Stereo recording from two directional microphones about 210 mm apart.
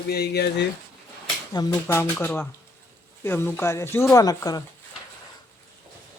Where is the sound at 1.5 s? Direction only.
15° left (ahead or behind).